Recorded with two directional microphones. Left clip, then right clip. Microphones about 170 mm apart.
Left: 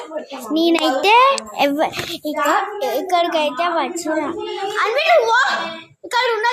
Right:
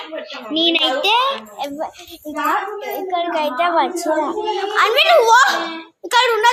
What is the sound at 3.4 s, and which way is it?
Speech, 10° left (ahead or behind).